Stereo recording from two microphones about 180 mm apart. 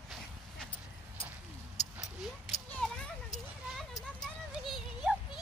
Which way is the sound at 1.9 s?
Centre (ahead or behind).